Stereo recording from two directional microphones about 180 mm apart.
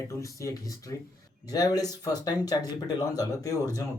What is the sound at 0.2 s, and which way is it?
Speech, 15° left (ahead or behind).